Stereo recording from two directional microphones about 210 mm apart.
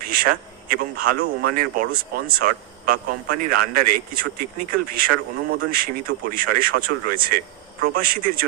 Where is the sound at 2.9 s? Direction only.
45° right (ahead or behind).